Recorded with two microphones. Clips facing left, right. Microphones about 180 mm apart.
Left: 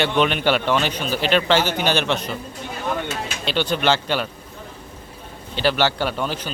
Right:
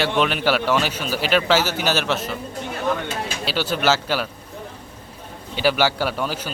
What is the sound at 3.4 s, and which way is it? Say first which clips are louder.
Speech: left 1 dB; 5° right (ahead or behind).